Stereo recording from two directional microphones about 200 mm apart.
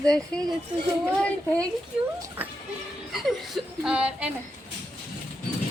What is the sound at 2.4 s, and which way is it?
A woman's voice, 10° right (ahead or behind).